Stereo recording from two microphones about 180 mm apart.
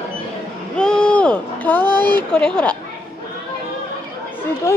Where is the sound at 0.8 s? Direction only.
5° left (ahead or behind).